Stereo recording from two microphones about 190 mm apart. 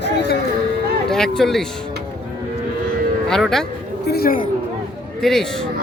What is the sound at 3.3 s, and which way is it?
Speech, centre (ahead or behind).